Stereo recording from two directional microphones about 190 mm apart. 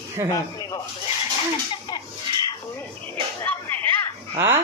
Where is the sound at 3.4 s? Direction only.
10° left (ahead or behind).